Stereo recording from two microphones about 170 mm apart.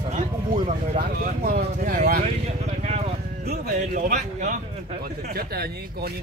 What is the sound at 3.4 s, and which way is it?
Speech, 50° right (ahead or behind).